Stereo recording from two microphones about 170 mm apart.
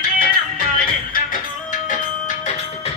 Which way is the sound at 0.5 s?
55° left (ahead or behind).